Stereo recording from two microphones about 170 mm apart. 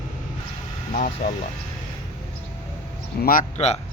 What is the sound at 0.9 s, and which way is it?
Speech, 50° left (ahead or behind).